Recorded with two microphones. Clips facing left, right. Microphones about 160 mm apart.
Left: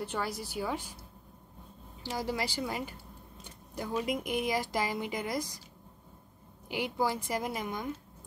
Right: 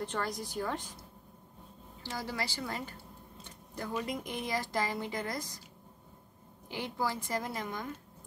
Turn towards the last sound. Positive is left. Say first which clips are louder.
# left 3 dB
turn(degrees=15)  # may be behind; listen again after turning